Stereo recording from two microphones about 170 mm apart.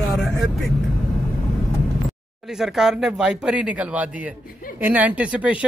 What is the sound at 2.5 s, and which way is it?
Speech, centre (ahead or behind).